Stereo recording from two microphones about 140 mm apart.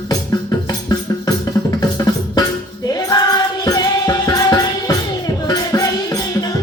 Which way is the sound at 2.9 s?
30° left (ahead or behind).